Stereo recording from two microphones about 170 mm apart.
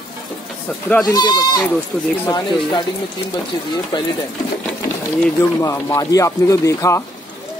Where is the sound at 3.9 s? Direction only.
25° left (ahead or behind).